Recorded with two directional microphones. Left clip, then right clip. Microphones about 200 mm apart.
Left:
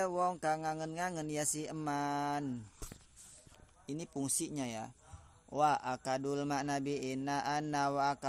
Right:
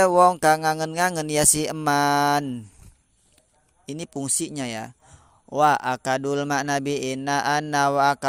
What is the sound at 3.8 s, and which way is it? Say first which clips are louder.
Speech: right 10 dB; 40° right (ahead or behind).